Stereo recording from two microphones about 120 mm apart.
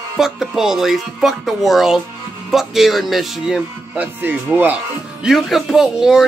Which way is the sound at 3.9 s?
15° right (ahead or behind).